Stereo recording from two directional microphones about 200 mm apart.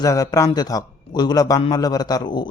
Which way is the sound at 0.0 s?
15° left (ahead or behind).